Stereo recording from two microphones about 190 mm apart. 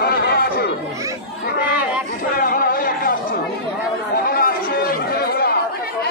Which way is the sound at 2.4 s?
50° left (ahead or behind).